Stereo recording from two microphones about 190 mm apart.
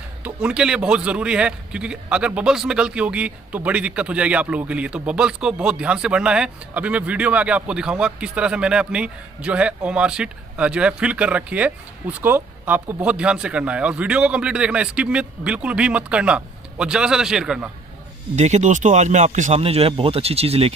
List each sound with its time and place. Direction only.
0.2 s a man's voice: 5° right (ahead or behind)
18.3 s speech: 35° right (ahead or behind)